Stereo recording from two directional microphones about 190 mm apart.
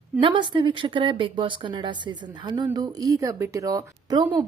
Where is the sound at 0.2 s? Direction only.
25° right (ahead or behind).